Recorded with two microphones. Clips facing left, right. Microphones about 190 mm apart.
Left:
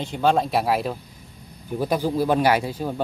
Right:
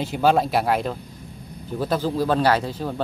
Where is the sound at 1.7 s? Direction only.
15° left (ahead or behind).